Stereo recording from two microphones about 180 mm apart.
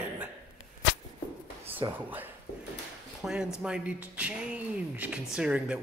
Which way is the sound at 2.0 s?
10° right (ahead or behind).